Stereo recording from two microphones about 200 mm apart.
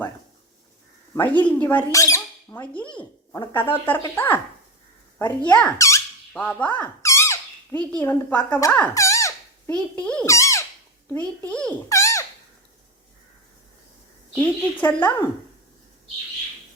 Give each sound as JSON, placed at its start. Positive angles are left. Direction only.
{"t": 1.1, "sound": "speech", "side_deg": 10}
{"t": 2.8, "sound": "speech", "side_deg": 25}
{"t": 3.8, "sound": "a woman's voice", "side_deg": 10}
{"t": 5.2, "sound": "squeak", "side_deg": 5}
{"t": 9.7, "sound": "a child's voice", "side_deg": 5}
{"t": 14.3, "sound": "a woman's voice", "side_deg": 10}